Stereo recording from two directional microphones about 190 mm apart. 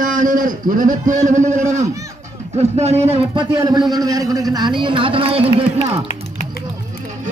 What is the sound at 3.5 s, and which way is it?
A man's voice, 20° right (ahead or behind).